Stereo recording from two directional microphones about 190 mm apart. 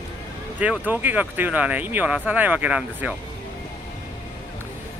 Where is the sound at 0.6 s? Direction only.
10° right (ahead or behind).